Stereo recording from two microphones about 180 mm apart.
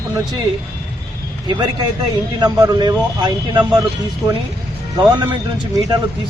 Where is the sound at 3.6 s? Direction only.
5° right (ahead or behind).